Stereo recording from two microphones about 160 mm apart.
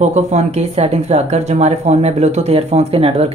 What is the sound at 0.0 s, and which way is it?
Speech, 45° right (ahead or behind).